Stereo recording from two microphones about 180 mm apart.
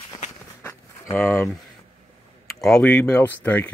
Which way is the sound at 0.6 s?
15° left (ahead or behind).